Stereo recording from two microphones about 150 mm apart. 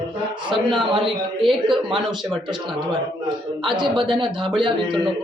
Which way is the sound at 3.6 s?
30° right (ahead or behind).